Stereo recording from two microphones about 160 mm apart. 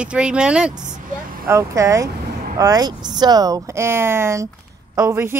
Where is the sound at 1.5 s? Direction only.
20° right (ahead or behind).